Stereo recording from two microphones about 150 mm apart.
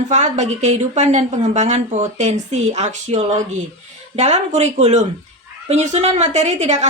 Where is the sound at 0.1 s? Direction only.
50° right (ahead or behind).